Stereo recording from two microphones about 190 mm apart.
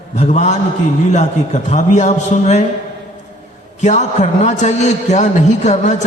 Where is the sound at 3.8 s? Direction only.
40° left (ahead or behind).